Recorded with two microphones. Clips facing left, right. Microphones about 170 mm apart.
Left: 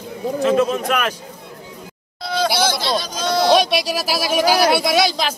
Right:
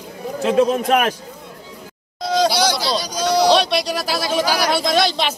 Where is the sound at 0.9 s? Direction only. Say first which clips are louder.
Right 4 dB; 45° right (ahead or behind).